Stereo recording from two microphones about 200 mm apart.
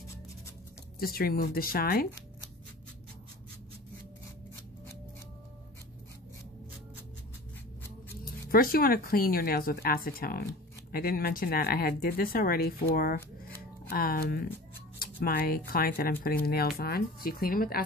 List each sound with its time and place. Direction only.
0.9 s speech: 50° left (ahead or behind)
8.3 s speech: 45° left (ahead or behind)